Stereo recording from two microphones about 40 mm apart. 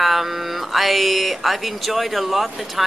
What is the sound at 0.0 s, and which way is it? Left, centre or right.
Speech, centre.